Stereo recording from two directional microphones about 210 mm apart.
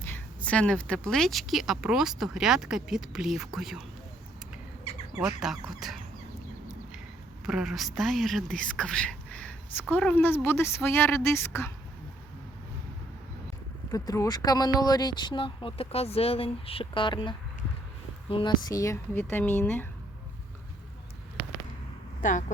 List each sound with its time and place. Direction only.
0.0 s a woman's voice: 10° left (ahead or behind)
4.9 s bird: 30° left (ahead or behind)
5.2 s a woman's voice: centre (ahead or behind)
7.4 s a woman's voice: centre (ahead or behind)
13.9 s speech: 15° left (ahead or behind)
22.2 s speech: 35° left (ahead or behind)